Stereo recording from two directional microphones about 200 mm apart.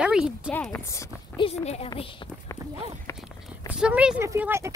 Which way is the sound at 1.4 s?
35° left (ahead or behind).